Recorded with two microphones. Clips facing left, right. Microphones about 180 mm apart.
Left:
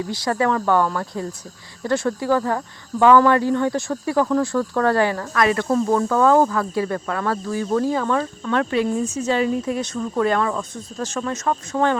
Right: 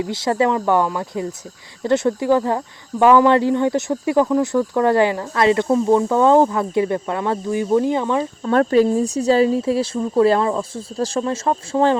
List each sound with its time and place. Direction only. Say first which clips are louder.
0.0 s speech: right 3 dB; 25° right (ahead or behind)
8.4 s speech: right 7 dB; 40° right (ahead or behind)